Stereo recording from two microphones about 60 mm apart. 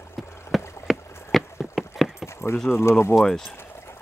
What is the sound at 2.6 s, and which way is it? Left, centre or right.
Speech, left.